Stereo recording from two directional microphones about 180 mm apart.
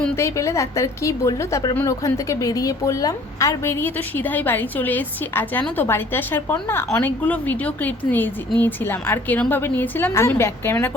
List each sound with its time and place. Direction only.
0.2 s a woman's voice: 15° left (ahead or behind)